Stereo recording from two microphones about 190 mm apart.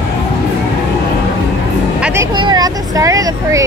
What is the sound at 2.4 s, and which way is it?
Vehicle, 20° right (ahead or behind).